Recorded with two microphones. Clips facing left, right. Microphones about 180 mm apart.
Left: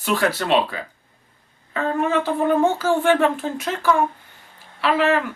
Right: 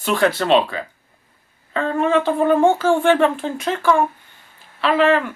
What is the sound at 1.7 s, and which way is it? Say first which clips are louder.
Speech: right 3 dB; 30° right (ahead or behind).